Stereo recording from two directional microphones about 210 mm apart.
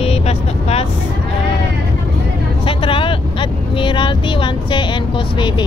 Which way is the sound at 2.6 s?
25° left (ahead or behind).